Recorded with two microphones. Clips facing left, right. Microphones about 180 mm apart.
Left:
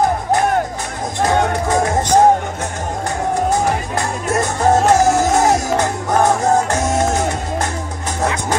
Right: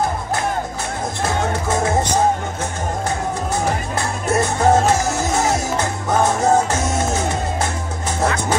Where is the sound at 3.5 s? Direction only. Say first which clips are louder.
Left 4 dB; 15° left (ahead or behind).